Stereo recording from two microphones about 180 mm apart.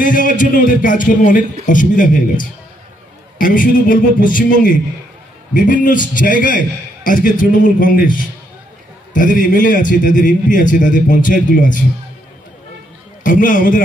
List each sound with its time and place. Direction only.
0.0 s a man's voice: 45° left (ahead or behind)
3.3 s a man's voice: 50° left (ahead or behind)
9.1 s a man's voice: 45° left (ahead or behind)
13.2 s a man's voice: 45° left (ahead or behind)